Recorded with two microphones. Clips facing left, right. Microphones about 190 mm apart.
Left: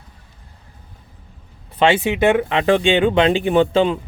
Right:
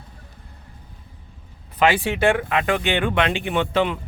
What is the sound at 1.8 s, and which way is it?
Speech, 20° left (ahead or behind).